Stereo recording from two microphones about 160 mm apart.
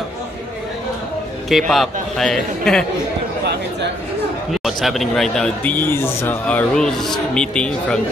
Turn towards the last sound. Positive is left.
turn(degrees=5)  # may be behind; listen again after turning